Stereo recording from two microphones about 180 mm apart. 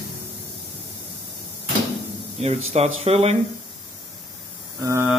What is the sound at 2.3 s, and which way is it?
Speech, 40° right (ahead or behind).